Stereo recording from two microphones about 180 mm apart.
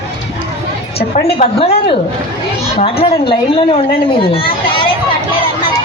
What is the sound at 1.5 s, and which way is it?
A woman's voice, 35° left (ahead or behind).